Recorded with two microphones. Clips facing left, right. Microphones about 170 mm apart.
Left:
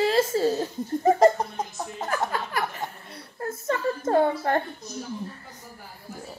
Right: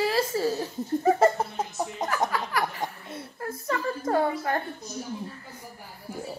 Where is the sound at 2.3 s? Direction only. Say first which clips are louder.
Right 1 dB; 25° left (ahead or behind).